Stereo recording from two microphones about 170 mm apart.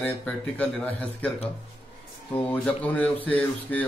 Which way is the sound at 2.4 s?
10° left (ahead or behind).